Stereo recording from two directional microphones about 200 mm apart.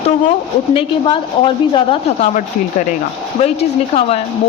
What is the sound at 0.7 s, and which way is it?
A woman's voice, 25° left (ahead or behind).